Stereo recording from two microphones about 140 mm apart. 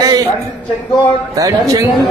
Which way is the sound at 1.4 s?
25° right (ahead or behind).